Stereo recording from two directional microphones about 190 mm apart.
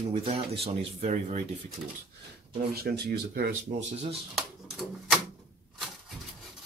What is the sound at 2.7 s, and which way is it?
Speech, 55° right (ahead or behind).